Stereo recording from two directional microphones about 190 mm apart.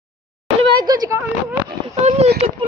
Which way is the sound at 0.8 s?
20° right (ahead or behind).